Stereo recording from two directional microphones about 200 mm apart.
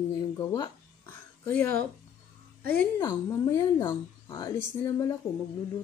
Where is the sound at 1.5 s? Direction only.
10° left (ahead or behind).